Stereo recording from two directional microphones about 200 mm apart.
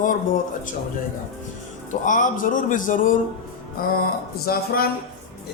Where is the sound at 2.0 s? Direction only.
40° left (ahead or behind).